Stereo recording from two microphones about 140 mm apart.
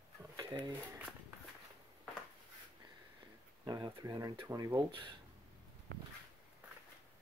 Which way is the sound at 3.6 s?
30° right (ahead or behind).